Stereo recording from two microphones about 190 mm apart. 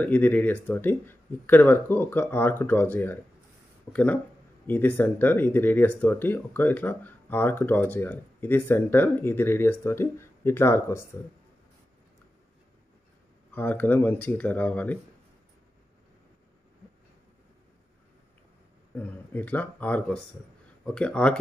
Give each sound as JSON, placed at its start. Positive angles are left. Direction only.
{"t": 0.0, "sound": "speech", "side_deg": 10}
{"t": 13.5, "sound": "speech", "side_deg": 10}
{"t": 18.9, "sound": "speech", "side_deg": 10}